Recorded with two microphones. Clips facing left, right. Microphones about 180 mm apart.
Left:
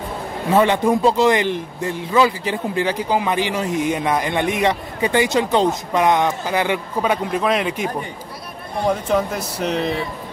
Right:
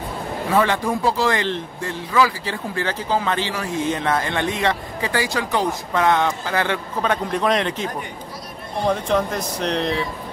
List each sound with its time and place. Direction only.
0.5 s speech: 20° left (ahead or behind); by 10.0 s 5° left (ahead or behind)